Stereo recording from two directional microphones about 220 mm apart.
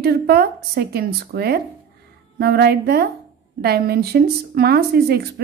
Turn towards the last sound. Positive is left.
turn(degrees=-45)  # may be behind; listen again after turning